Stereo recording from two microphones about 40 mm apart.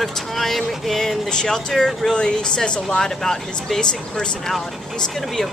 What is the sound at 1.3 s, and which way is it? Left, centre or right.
Speech, centre.